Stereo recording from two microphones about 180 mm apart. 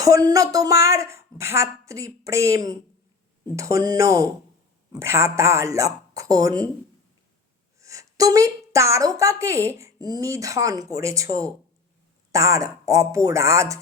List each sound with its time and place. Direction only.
0.0 s a woman's voice: 20° right (ahead or behind)
7.8 s a woman's voice: 15° right (ahead or behind)